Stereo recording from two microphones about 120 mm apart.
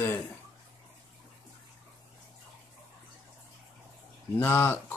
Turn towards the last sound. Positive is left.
turn(degrees=15)  # may be behind; listen again after turning